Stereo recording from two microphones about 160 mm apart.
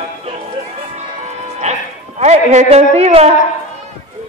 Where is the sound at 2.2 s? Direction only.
45° right (ahead or behind).